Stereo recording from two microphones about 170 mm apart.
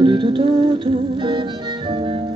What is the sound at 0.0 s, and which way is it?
Music, 30° right (ahead or behind).